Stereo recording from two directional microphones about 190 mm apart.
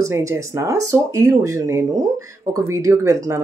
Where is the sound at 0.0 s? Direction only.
15° right (ahead or behind).